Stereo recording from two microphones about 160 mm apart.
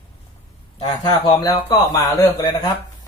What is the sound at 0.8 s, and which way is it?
Speech, 25° left (ahead or behind).